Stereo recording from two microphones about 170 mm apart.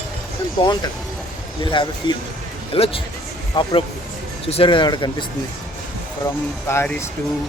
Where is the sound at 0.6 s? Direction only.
25° left (ahead or behind).